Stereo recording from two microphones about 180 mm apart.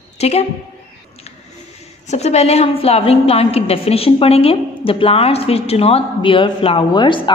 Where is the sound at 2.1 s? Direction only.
35° left (ahead or behind).